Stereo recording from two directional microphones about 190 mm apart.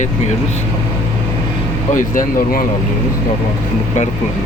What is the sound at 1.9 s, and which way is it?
Speech, 45° left (ahead or behind).